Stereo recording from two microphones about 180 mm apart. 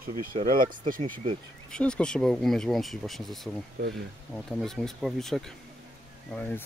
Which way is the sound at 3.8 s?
55° right (ahead or behind).